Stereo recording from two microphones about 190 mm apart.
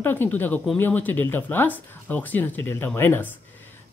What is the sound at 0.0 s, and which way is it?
Speech, 10° left (ahead or behind).